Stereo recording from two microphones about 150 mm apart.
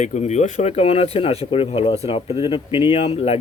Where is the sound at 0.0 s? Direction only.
50° left (ahead or behind).